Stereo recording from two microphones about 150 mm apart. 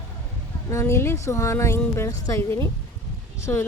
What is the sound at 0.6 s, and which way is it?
A woman's voice, 20° left (ahead or behind).